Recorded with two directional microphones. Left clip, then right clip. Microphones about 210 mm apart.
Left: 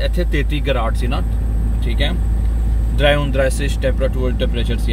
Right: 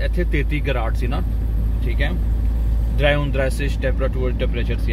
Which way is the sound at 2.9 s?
10° left (ahead or behind).